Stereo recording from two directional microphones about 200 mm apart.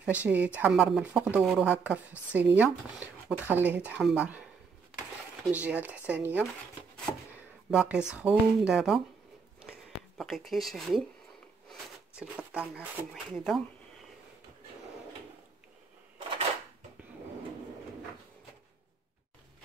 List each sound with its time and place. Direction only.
0.0 s speech: 5° right (ahead or behind)
5.5 s speech: 5° right (ahead or behind)
7.7 s speech: 5° right (ahead or behind)
9.6 s a sound: centre (ahead or behind)
12.2 s speech: 5° right (ahead or behind)